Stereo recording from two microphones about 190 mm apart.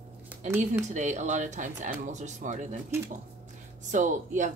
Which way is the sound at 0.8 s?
40° right (ahead or behind).